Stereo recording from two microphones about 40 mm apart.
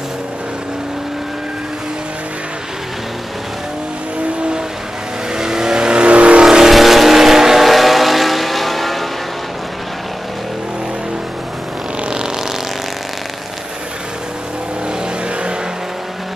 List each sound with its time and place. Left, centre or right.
5.3 s vehicle: centre
6.4 s vehicle: centre
12.0 s vehicle: centre